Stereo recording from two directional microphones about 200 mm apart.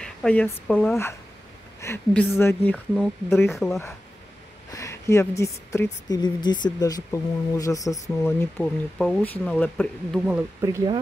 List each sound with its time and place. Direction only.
0.0 s a woman's voice: 5° left (ahead or behind)
4.7 s a woman's voice: 15° left (ahead or behind)
10.2 s speech: 10° right (ahead or behind)